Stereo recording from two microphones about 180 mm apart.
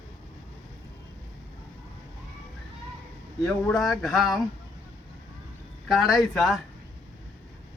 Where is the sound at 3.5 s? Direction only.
5° left (ahead or behind).